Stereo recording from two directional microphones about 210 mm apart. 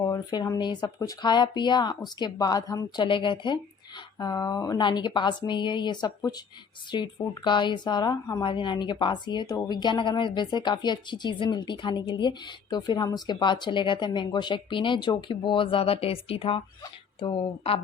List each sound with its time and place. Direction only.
0.0 s speech: 20° left (ahead or behind)